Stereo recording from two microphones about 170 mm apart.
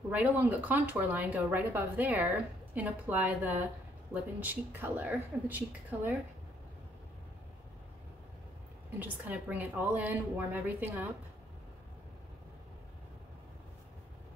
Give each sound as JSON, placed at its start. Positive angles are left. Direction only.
{"t": 0.1, "sound": "speech", "side_deg": -10}
{"t": 9.0, "sound": "speech", "side_deg": -10}